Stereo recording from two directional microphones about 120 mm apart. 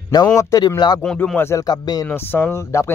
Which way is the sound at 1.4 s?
25° left (ahead or behind).